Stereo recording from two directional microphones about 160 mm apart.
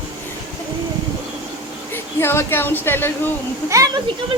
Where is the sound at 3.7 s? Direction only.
20° right (ahead or behind).